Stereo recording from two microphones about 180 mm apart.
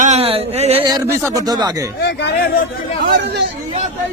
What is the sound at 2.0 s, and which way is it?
Speech, 65° left (ahead or behind).